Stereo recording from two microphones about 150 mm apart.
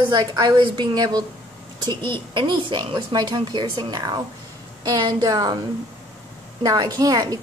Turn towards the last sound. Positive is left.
turn(degrees=-25)  # may be behind; listen again after turning